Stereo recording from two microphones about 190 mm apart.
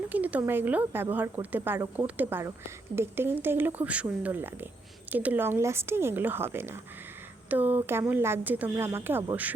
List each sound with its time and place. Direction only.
0.1 s speech: 10° right (ahead or behind)